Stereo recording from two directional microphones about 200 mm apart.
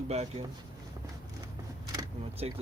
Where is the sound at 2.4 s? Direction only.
30° right (ahead or behind).